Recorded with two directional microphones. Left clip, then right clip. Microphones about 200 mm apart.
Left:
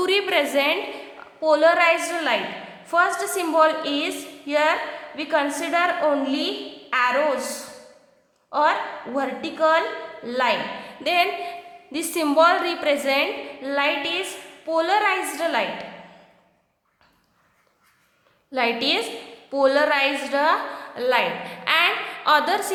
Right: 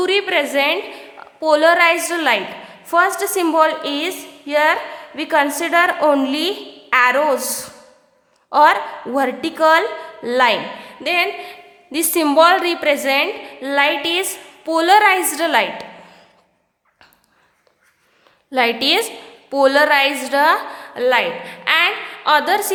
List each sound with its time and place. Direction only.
0.0 s a woman's voice: 15° right (ahead or behind)
11.0 s a woman's voice: 20° right (ahead or behind)
18.5 s a woman's voice: 25° right (ahead or behind)